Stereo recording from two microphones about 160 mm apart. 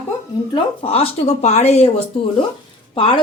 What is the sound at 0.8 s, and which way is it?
Speech, 40° left (ahead or behind).